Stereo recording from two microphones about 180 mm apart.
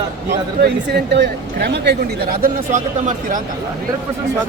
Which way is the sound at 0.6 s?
70° right (ahead or behind).